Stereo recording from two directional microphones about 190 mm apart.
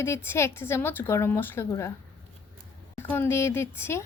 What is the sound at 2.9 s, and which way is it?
A woman's voice, 10° left (ahead or behind).